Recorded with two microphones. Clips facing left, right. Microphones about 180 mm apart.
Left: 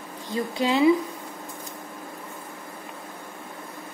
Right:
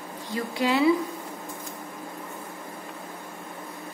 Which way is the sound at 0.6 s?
20° left (ahead or behind).